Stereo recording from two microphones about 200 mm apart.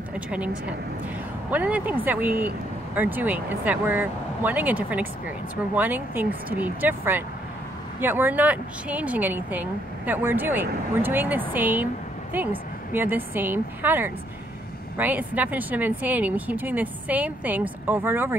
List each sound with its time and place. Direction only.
0.1 s speech: 5° right (ahead or behind)